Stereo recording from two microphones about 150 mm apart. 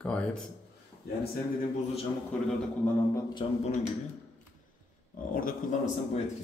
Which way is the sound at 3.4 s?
35° left (ahead or behind).